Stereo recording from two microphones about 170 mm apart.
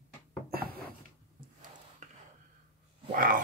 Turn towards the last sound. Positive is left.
turn(degrees=-55)  # may be behind; listen again after turning